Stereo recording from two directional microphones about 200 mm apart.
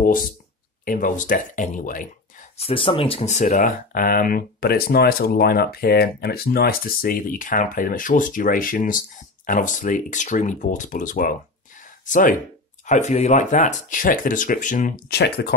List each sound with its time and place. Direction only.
0.0 s speech: 45° left (ahead or behind)
2.5 s speech: 30° left (ahead or behind); by 15.5 s 55° left (ahead or behind)